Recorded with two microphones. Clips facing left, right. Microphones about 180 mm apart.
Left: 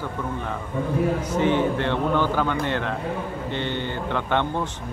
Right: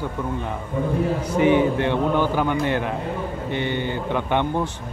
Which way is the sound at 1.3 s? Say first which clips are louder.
Right 7 dB; 10° right (ahead or behind).